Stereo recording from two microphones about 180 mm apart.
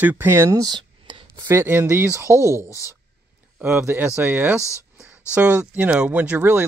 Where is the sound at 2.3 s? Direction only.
15° left (ahead or behind).